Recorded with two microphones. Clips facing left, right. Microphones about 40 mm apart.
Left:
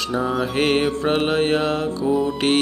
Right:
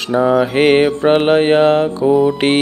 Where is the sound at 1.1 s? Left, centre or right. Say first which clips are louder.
Right 8 dB; right.